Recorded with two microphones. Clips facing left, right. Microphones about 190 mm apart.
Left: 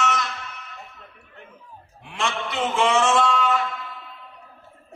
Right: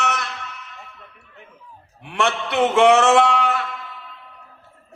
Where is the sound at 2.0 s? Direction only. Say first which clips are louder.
Right 5 dB; 65° right (ahead or behind).